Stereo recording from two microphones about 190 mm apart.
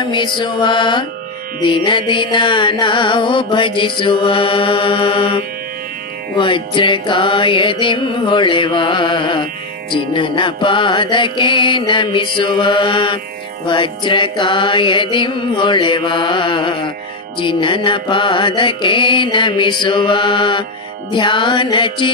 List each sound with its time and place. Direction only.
0.1 s music: 25° left (ahead or behind)